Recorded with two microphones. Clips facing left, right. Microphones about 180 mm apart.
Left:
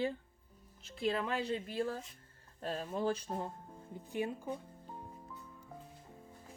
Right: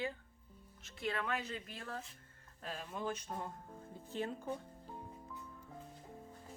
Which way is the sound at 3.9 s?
15° left (ahead or behind).